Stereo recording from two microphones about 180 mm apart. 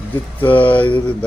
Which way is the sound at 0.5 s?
30° left (ahead or behind).